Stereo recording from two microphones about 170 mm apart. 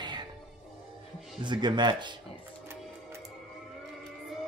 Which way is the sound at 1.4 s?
25° right (ahead or behind).